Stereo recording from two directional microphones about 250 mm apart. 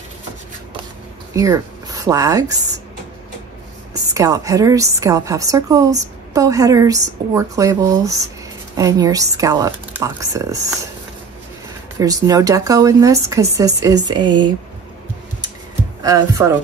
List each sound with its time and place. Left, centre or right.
1.3 s speech: centre
4.1 s speech: centre
12.0 s speech: centre
16.0 s speech: centre